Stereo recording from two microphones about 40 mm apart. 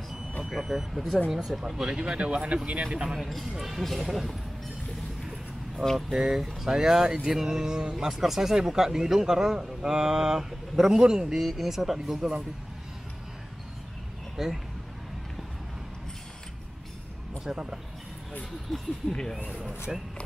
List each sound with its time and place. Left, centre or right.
0.4 s speech: centre
1.9 s speech: right
3.2 s speech: centre
5.8 s speech: centre
6.1 s speech: centre
14.3 s speech: centre
17.5 s speech: right
18.7 s speech: centre
19.9 s speech: centre